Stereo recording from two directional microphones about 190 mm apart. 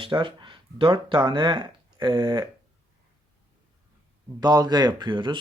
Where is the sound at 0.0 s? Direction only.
25° right (ahead or behind).